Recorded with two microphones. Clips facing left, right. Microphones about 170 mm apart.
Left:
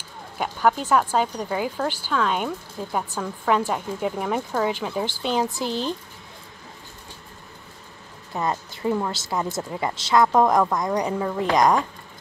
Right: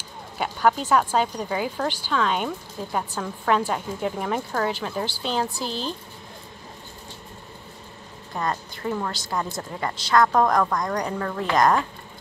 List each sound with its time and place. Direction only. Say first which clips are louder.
0.6 s a woman's voice: even; 5° left (ahead or behind)
5.0 s speech: left 3 dB; 15° left (ahead or behind)
8.4 s speech: left 2 dB; 15° left (ahead or behind)
9.9 s a woman's voice: left 1 dB; 25° left (ahead or behind)